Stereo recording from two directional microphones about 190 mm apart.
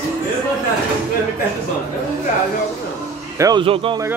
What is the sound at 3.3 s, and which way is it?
Speech, 20° right (ahead or behind).